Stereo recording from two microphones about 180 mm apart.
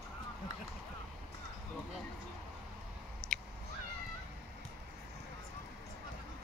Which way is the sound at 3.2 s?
20° right (ahead or behind).